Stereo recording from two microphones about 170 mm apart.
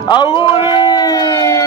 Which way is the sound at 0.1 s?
25° left (ahead or behind).